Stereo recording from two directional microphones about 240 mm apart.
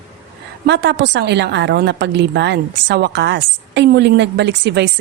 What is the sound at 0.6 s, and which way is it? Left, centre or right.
A woman's voice, right.